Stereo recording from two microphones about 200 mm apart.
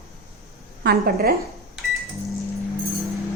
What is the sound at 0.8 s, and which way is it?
Speech, 50° right (ahead or behind).